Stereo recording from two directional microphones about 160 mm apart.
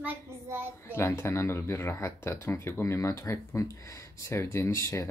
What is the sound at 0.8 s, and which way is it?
Speech, 15° left (ahead or behind).